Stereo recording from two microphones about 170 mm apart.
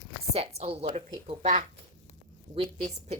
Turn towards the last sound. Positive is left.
turn(degrees=-35)  # may be behind; listen again after turning